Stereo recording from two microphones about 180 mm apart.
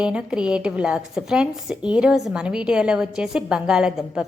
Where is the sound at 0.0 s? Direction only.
5° right (ahead or behind).